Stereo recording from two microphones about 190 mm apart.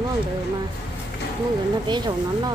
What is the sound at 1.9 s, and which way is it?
Speech, 25° right (ahead or behind).